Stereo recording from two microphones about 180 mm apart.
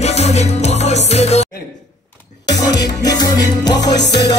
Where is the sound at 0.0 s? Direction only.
35° left (ahead or behind).